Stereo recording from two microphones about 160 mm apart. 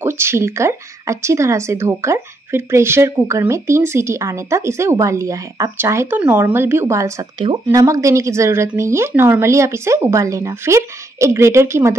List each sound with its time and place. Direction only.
0.0 s speech: 15° right (ahead or behind)